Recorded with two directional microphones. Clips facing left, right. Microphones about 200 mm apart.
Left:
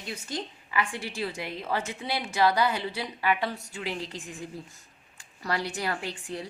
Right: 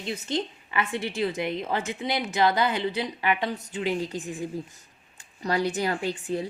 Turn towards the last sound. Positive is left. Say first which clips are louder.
# right 5 dB
turn(degrees=-25)  # may be behind; listen again after turning